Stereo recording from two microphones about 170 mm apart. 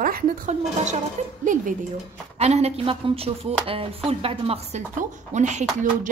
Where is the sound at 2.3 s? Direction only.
40° right (ahead or behind).